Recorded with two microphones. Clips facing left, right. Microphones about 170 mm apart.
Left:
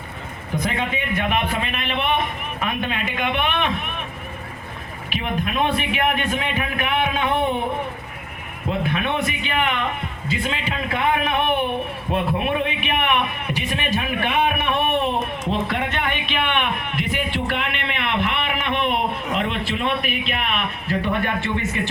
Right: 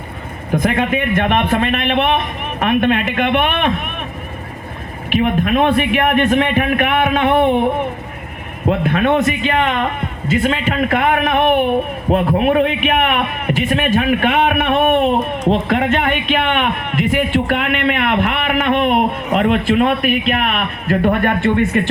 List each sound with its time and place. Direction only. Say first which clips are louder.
0.5 s a man's voice: right 8 dB; 55° right (ahead or behind)
5.0 s a man's voice: right 10 dB; 50° right (ahead or behind)
8.6 s a man's voice: right 8 dB; 55° right (ahead or behind)
12.0 s speech: right 8 dB; 50° right (ahead or behind)